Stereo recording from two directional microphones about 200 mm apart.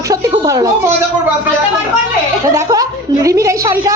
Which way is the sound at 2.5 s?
15° right (ahead or behind).